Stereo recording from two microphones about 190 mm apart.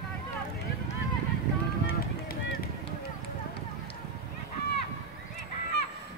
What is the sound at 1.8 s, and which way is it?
Run, 50° left (ahead or behind).